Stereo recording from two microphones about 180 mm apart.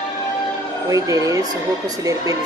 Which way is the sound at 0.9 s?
20° right (ahead or behind).